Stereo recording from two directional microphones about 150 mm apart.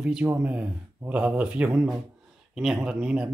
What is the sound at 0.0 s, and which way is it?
Speech, 10° right (ahead or behind).